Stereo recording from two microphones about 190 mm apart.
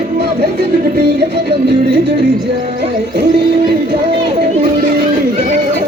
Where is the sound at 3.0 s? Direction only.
60° right (ahead or behind).